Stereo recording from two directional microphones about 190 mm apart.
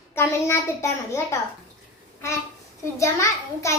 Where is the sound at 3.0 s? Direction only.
15° left (ahead or behind).